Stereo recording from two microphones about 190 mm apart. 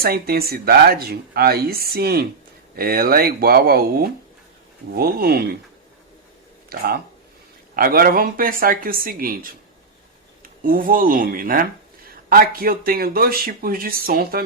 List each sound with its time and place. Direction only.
0.0 s speech: 55° right (ahead or behind)
6.7 s speech: 55° right (ahead or behind)